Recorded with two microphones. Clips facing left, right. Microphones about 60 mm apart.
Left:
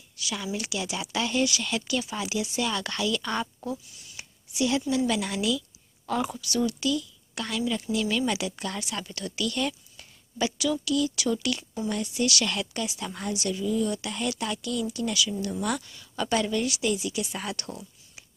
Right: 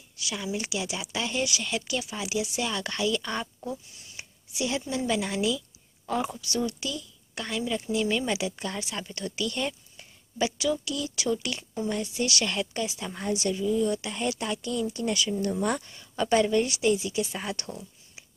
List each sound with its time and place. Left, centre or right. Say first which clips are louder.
0.2 s a woman's voice: even; centre
6.4 s a woman's voice: left 3 dB; right
13.3 s a woman's voice: right 2 dB; right
14.6 s speech: even; right